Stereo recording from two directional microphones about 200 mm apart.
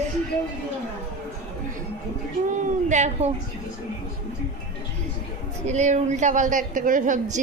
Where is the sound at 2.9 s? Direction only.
35° right (ahead or behind).